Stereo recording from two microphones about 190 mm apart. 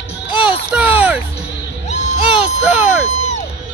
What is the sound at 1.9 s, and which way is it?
Crowd, 35° left (ahead or behind).